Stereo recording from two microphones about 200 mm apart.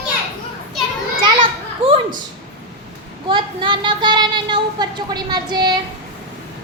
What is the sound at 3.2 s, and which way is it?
A woman's voice, 25° right (ahead or behind).